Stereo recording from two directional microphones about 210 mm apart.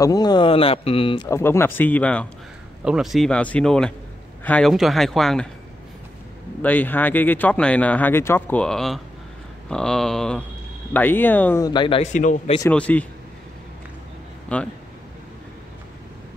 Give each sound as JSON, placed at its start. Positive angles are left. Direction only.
{"t": 0.0, "sound": "speech", "side_deg": 20}
{"t": 6.6, "sound": "speech", "side_deg": 10}
{"t": 12.6, "sound": "speech", "side_deg": 5}
{"t": 14.5, "sound": "speech", "side_deg": 5}